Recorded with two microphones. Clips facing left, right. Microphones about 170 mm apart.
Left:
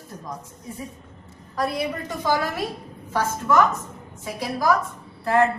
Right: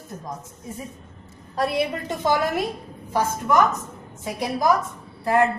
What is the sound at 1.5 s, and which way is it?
A woman's voice, 25° right (ahead or behind).